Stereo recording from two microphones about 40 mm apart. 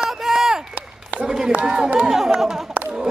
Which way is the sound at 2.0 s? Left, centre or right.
Centre.